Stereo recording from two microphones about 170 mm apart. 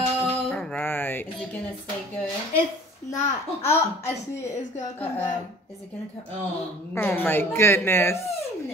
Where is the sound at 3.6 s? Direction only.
15° left (ahead or behind).